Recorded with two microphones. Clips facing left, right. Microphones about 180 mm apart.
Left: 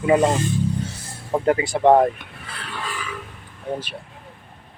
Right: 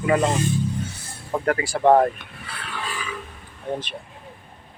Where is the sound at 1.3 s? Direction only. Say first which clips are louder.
Left 3 dB; 20° left (ahead or behind).